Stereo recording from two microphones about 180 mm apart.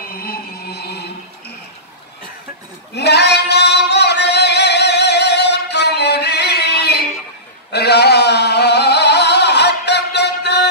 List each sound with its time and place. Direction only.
0.1 s music: 55° left (ahead or behind)
2.9 s singing: 65° left (ahead or behind)
7.7 s a sound: 65° left (ahead or behind)